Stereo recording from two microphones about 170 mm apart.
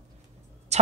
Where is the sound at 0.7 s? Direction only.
40° right (ahead or behind).